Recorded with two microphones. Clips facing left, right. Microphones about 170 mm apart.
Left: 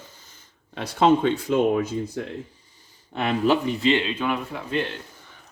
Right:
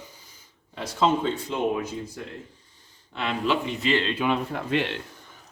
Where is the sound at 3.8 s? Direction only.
30° left (ahead or behind).